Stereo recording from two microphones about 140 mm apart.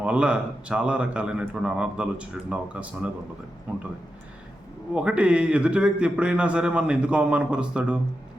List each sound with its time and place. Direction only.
0.0 s a man's voice: 10° right (ahead or behind)
4.9 s a man's voice: 5° right (ahead or behind)